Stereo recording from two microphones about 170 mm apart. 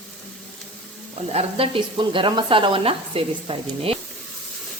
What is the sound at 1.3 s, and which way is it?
Speech, 35° right (ahead or behind).